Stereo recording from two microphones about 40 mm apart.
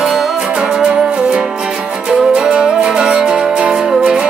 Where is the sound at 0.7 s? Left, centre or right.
Right.